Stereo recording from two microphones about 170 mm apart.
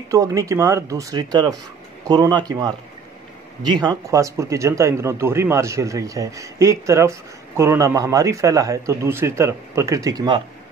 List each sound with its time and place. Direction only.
0.1 s speech: 20° right (ahead or behind)